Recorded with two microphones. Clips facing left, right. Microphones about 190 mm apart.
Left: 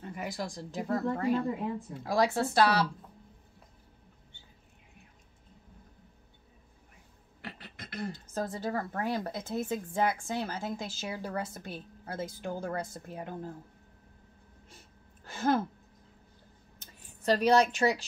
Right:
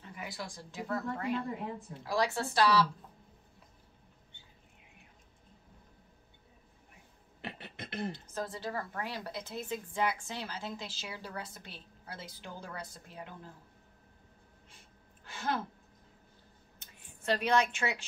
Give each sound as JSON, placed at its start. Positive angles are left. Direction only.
{"t": 0.1, "sound": "speech", "side_deg": 45}
{"t": 2.0, "sound": "a woman's voice", "side_deg": 50}
{"t": 7.4, "sound": "beatboxing", "side_deg": -25}
{"t": 8.4, "sound": "a woman's voice", "side_deg": 45}
{"t": 15.2, "sound": "a sound", "side_deg": 40}
{"t": 16.8, "sound": "speech", "side_deg": 40}